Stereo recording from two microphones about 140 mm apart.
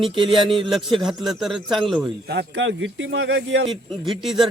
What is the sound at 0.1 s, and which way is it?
Speech, 40° right (ahead or behind).